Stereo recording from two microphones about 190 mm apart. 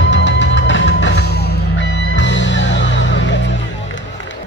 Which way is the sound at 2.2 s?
75° left (ahead or behind).